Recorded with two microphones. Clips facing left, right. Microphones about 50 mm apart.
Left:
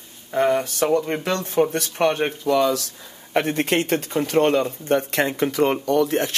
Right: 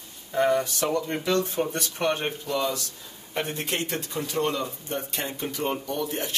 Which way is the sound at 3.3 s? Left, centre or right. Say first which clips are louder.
Left 9 dB; left.